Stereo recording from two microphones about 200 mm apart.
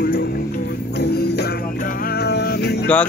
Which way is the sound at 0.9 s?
55° left (ahead or behind).